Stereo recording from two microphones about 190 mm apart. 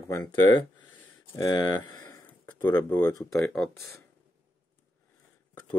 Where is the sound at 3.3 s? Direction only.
5° left (ahead or behind).